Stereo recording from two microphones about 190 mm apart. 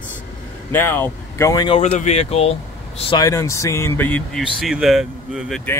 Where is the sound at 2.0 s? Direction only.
35° left (ahead or behind).